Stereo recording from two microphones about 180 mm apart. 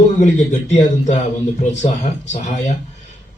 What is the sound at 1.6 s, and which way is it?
A man's voice, 40° left (ahead or behind).